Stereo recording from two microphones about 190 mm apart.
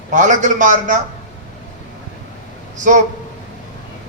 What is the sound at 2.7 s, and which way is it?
Speech, 40° right (ahead or behind).